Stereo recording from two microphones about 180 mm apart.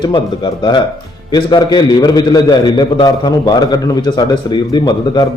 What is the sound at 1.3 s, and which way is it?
A man's voice, 25° left (ahead or behind).